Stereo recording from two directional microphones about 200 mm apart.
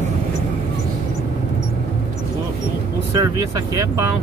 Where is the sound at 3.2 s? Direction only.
15° right (ahead or behind).